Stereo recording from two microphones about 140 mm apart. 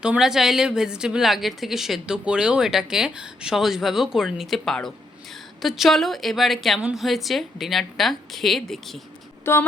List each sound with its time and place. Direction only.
0.0 s a woman's voice: 5° right (ahead or behind)
9.4 s speech: 15° left (ahead or behind)